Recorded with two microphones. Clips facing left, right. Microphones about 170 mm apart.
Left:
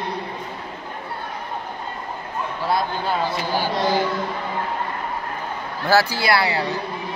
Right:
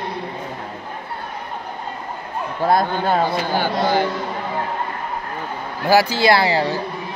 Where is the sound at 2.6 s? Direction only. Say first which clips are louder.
Right 6 dB; 50° right (ahead or behind).